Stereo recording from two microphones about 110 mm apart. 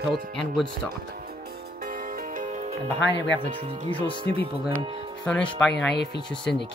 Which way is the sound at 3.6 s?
80° right.